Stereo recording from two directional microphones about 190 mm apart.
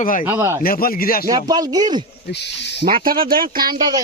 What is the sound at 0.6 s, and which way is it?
Speech, 50° left (ahead or behind).